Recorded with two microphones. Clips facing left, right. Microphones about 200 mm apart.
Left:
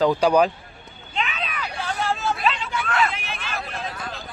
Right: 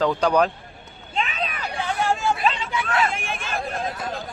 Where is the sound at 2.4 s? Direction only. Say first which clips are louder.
Right 1 dB; 40° right (ahead or behind).